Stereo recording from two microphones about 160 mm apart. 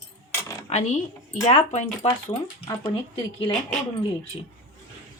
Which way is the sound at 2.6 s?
20° left (ahead or behind).